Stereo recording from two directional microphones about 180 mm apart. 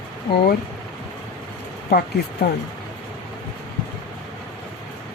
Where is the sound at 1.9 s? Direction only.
55° left (ahead or behind).